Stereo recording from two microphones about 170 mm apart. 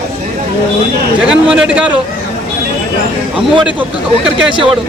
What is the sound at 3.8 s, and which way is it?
Speech, 5° right (ahead or behind).